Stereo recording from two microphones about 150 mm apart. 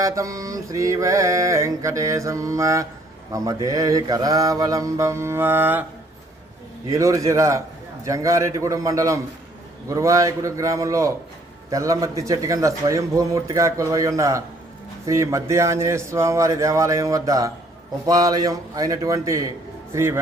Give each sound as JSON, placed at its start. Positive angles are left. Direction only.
{"t": 0.0, "sound": "mantra", "side_deg": -20}
{"t": 6.9, "sound": "mantra", "side_deg": -20}
{"t": 19.9, "sound": "speech", "side_deg": -20}